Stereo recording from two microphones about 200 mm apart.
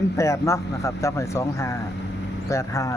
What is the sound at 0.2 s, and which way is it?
Speech, 15° left (ahead or behind).